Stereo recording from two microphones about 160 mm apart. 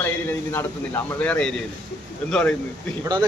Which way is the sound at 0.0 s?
10° left (ahead or behind).